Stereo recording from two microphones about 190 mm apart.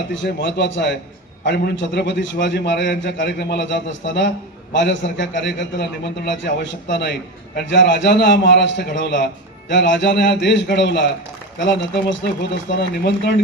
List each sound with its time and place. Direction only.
0.1 s a man's voice: 70° left (ahead or behind)